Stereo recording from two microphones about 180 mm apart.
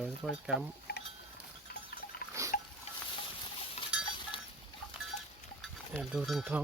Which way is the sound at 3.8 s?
35° left (ahead or behind).